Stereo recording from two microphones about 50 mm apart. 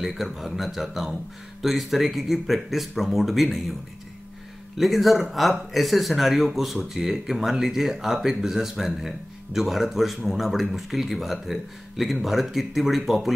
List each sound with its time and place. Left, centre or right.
0.0 s speech: centre
4.7 s speech: centre